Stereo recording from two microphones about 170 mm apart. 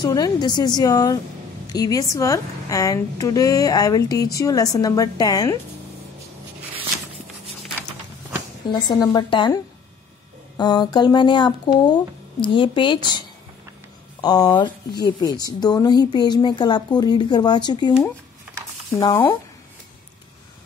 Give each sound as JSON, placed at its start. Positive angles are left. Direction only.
{"t": 0.0, "sound": "a woman's voice", "side_deg": 25}
{"t": 8.8, "sound": "a woman's voice", "side_deg": 20}
{"t": 10.6, "sound": "a woman's voice", "side_deg": 25}
{"t": 14.2, "sound": "a woman's voice", "side_deg": 25}
{"t": 18.9, "sound": "a woman's voice", "side_deg": 20}